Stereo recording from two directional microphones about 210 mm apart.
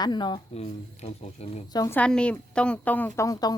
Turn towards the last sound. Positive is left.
turn(degrees=15)  # may be behind; listen again after turning